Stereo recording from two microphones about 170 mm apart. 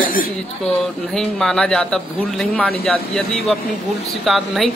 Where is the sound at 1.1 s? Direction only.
5° left (ahead or behind).